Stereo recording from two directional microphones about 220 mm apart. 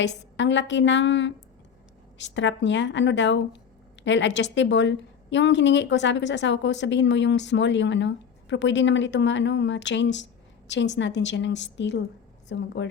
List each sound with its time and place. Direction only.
0.0 s a woman's voice: 55° left (ahead or behind)